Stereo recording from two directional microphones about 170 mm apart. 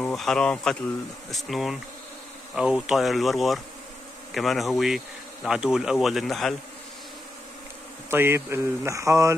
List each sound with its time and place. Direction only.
0.0 s speech: centre (ahead or behind)
8.1 s speech: 15° right (ahead or behind)